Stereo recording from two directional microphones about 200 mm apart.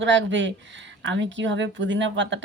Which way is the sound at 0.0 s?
70° right (ahead or behind).